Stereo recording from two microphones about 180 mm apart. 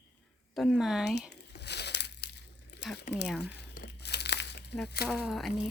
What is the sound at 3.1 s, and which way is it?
Speech, 70° left (ahead or behind).